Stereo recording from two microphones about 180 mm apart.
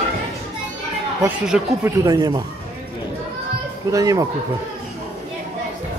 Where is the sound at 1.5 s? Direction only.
5° right (ahead or behind).